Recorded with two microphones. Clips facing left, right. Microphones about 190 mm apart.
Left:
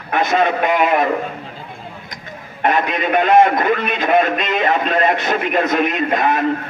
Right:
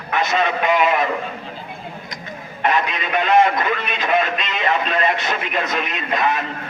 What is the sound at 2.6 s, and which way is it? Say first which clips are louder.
A man's voice: left 3 dB; 50° left (ahead or behind).